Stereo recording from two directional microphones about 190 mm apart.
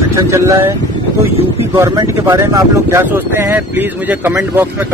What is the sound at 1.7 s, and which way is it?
Speech, 15° right (ahead or behind).